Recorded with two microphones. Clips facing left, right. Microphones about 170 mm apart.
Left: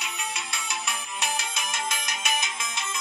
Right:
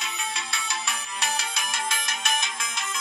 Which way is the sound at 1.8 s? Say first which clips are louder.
Right 1 dB; 5° left (ahead or behind).